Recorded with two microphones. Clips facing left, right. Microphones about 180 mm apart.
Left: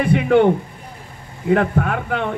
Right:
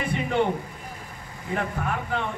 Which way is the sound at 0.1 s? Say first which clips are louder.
Left 10 dB; 65° left (ahead or behind).